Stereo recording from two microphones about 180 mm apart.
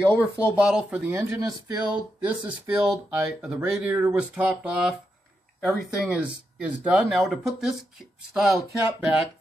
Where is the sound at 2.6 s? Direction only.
10° right (ahead or behind).